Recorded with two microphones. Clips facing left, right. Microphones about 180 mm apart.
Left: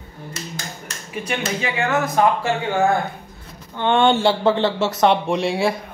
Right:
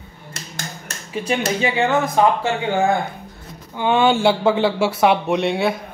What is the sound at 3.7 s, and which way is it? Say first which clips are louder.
Speech: even; 5° right (ahead or behind).